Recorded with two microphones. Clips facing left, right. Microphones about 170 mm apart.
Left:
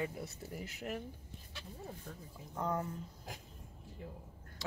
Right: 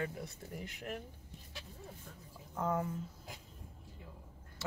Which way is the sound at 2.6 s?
5° right (ahead or behind).